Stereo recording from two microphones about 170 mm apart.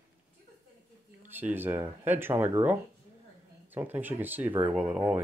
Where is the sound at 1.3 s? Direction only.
10° right (ahead or behind).